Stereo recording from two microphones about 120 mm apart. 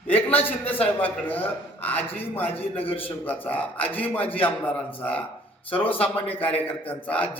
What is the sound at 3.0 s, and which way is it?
A woman's voice, 15° left (ahead or behind).